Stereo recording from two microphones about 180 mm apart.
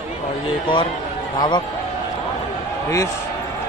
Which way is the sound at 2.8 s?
15° left (ahead or behind).